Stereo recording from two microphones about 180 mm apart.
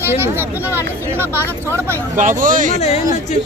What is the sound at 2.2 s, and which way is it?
Speech, 45° right (ahead or behind).